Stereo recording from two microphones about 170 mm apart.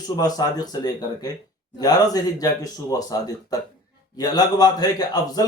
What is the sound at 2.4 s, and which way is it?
A man's voice, 20° left (ahead or behind).